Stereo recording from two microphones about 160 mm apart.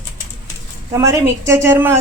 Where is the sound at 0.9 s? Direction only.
15° right (ahead or behind).